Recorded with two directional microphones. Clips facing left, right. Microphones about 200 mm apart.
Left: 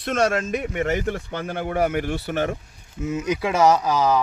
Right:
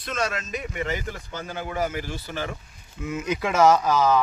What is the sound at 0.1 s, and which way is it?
Speech, 50° left (ahead or behind).